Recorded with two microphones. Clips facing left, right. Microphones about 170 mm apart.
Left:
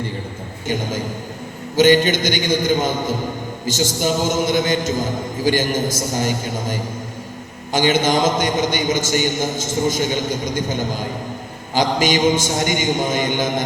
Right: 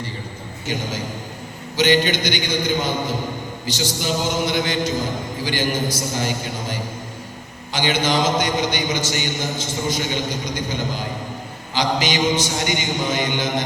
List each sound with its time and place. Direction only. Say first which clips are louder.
0.7 s a man's voice: left 3 dB; 50° left (ahead or behind)